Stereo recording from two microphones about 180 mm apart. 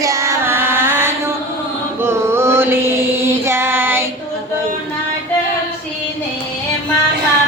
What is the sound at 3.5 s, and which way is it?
Child singing, 15° right (ahead or behind).